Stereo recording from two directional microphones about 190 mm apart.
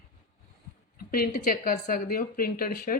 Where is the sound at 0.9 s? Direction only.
50° left (ahead or behind).